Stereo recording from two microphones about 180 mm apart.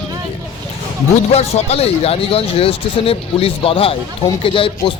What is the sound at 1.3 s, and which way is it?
Speech, 35° left (ahead or behind).